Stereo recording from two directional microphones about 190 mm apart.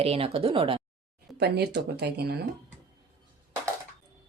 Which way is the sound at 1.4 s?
60° right (ahead or behind).